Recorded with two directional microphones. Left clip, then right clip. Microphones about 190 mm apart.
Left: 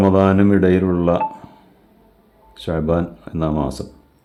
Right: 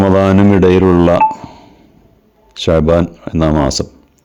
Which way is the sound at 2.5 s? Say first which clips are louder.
Right 10 dB; 40° right (ahead or behind).